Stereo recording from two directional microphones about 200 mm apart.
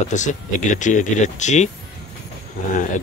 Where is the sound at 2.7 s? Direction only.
40° left (ahead or behind).